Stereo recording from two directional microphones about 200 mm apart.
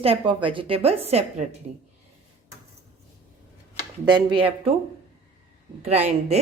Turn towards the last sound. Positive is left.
turn(degrees=-30)  # may be behind; listen again after turning